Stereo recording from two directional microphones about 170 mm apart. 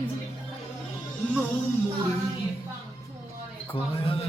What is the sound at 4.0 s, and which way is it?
Speech, 35° left (ahead or behind).